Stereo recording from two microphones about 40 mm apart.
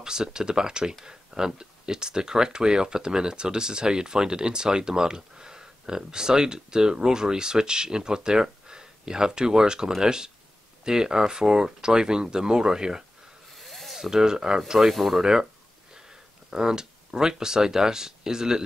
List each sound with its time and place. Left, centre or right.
0.0 s speech: centre
13.6 s a sound: centre
14.1 s speech: centre
14.7 s speech: centre
16.5 s speech: centre